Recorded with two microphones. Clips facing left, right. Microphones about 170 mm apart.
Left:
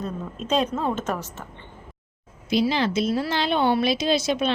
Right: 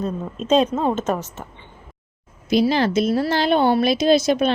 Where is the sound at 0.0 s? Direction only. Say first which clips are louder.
Right 5 dB; 25° right (ahead or behind).